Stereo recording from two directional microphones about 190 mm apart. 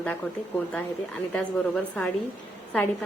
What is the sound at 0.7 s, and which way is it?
Speech, 5° left (ahead or behind).